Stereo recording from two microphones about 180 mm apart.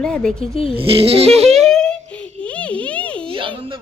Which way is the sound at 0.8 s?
30° right (ahead or behind).